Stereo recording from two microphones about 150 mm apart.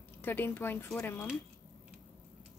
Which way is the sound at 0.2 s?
15° left (ahead or behind).